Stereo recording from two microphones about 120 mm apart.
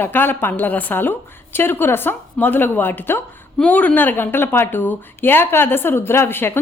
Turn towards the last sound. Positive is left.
turn(degrees=20)  # may be behind; listen again after turning